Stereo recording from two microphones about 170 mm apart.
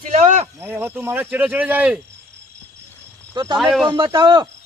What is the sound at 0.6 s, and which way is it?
Speech, 10° right (ahead or behind).